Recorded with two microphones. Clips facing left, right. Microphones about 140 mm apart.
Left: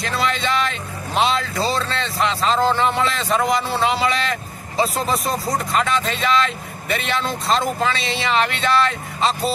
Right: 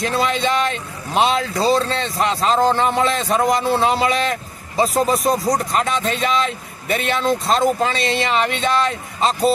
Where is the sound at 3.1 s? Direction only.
45° right (ahead or behind).